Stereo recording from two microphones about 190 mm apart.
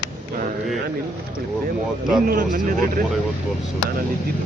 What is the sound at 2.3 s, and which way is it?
Speech, 50° right (ahead or behind).